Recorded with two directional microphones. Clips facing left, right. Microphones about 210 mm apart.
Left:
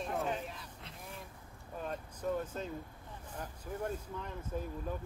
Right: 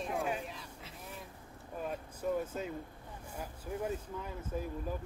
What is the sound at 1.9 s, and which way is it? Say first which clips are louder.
Speech: right 1 dB; 10° right (ahead or behind).